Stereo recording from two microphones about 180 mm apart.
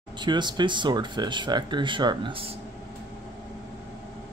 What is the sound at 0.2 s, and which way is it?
Speech, 25° right (ahead or behind).